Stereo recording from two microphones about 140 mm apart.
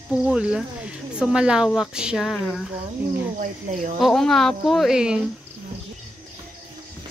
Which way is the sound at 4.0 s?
Centre (ahead or behind).